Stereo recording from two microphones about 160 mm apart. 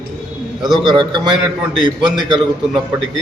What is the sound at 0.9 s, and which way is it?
A man's voice, 30° right (ahead or behind).